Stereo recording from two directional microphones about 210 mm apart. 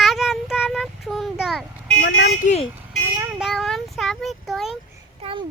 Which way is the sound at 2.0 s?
60° left (ahead or behind).